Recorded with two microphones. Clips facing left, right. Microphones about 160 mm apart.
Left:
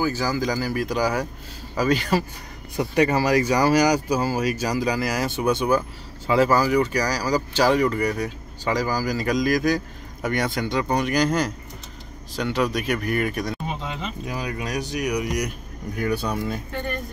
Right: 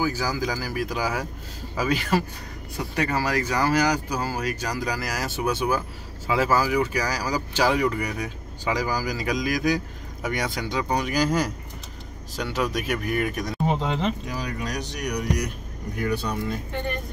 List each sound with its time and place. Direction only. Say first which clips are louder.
0.0 s speech: left 2 dB; 10° right (ahead or behind)
3.0 s speech: left 6 dB; 20° left (ahead or behind); by 13.6 s centre (ahead or behind)
13.7 s a sound: right 6 dB; 70° right (ahead or behind)
14.2 s speech: left 2 dB; 10° left (ahead or behind)